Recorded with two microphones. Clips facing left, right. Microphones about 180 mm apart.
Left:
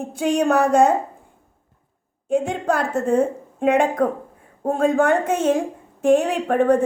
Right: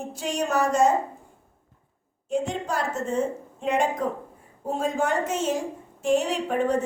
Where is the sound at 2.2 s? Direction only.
55° left (ahead or behind).